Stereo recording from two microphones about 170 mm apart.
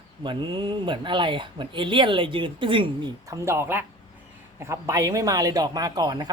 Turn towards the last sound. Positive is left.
turn(degrees=-25)  # may be behind; listen again after turning